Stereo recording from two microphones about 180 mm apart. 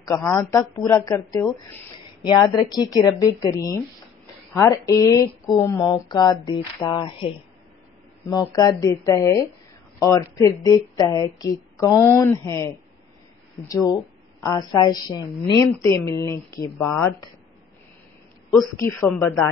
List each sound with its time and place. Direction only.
0.1 s a woman's voice: 10° left (ahead or behind)
0.4 s a woman's voice: 20° left (ahead or behind)
14.4 s a woman's voice: 20° left (ahead or behind)
18.8 s a woman's voice: 15° left (ahead or behind)